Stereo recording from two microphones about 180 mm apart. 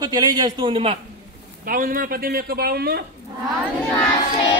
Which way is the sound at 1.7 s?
50° right (ahead or behind).